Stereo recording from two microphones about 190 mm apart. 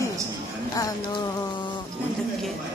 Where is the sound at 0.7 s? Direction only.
20° left (ahead or behind).